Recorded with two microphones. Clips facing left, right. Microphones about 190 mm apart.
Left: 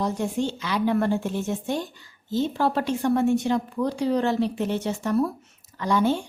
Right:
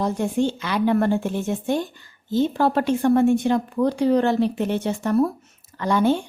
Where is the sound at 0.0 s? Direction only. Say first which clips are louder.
Right 4 dB; 55° right (ahead or behind).